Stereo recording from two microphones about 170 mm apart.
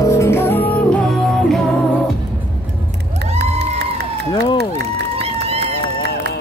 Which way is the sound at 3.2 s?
80° right.